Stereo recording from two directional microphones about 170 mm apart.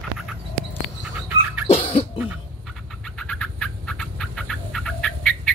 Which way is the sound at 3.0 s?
5° left (ahead or behind).